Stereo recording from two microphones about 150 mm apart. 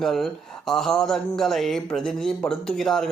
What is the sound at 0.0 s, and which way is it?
A man's voice, centre (ahead or behind).